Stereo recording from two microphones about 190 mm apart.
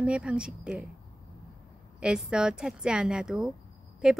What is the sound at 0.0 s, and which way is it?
Speech, 5° right (ahead or behind).